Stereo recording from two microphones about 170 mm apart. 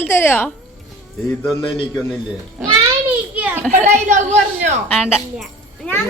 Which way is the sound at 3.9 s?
45° right (ahead or behind).